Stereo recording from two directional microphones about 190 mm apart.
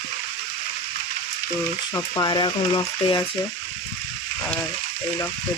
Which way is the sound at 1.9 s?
20° left (ahead or behind).